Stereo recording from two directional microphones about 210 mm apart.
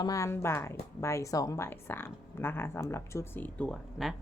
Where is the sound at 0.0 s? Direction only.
15° left (ahead or behind).